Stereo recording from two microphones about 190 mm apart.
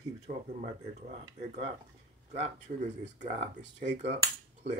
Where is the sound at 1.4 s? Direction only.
35° right (ahead or behind).